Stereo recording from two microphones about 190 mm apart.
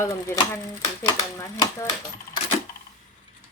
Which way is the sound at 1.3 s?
15° left (ahead or behind).